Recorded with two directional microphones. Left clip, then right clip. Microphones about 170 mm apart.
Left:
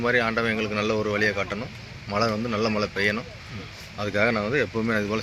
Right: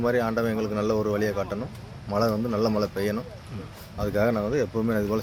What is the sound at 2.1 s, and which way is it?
Speech, centre (ahead or behind).